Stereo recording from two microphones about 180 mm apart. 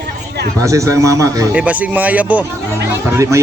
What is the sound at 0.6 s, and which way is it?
Speech, 15° right (ahead or behind).